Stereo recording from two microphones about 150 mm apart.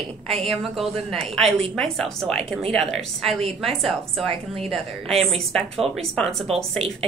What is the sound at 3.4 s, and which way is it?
A woman's voice, 40° right (ahead or behind).